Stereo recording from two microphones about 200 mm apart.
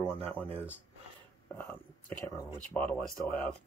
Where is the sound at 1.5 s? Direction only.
10° left (ahead or behind).